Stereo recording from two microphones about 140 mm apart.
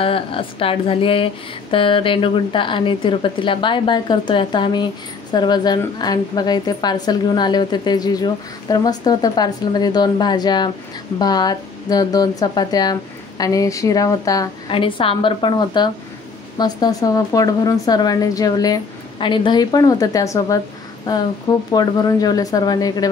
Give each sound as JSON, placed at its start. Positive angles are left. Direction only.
{"t": 0.0, "sound": "a woman's voice", "side_deg": 40}
{"t": 14.7, "sound": "a woman's voice", "side_deg": 40}